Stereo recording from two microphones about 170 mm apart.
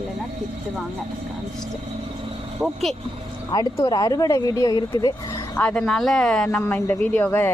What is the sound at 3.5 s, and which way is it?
Speech, 20° left (ahead or behind).